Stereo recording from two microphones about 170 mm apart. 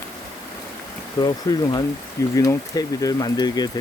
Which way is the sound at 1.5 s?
25° left (ahead or behind).